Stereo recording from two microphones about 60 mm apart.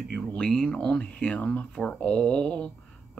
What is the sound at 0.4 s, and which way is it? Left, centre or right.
Speech, centre.